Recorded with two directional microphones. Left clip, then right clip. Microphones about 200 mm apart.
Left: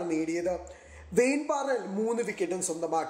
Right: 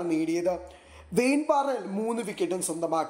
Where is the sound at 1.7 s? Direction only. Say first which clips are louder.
Even; 20° right (ahead or behind).